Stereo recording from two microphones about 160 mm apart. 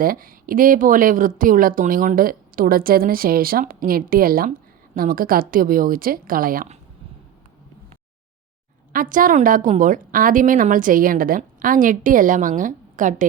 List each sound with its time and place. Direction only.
0.0 s speech: 65° right (ahead or behind)
8.9 s speech: 60° right (ahead or behind)